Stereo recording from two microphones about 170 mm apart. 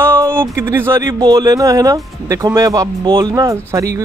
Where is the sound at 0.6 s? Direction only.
15° right (ahead or behind).